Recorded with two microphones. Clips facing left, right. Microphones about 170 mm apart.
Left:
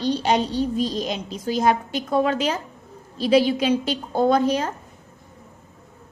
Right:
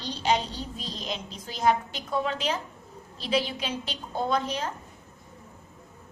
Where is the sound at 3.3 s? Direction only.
85° left.